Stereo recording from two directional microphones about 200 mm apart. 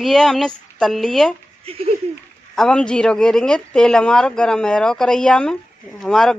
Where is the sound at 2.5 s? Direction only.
5° left (ahead or behind).